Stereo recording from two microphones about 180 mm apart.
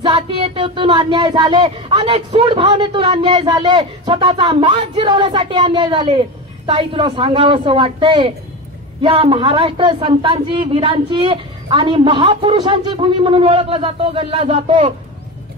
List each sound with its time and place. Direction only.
0.0 s music: 25° right (ahead or behind)